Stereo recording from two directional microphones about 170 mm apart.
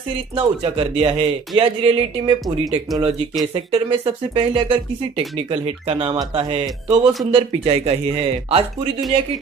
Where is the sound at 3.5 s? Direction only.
30° right (ahead or behind).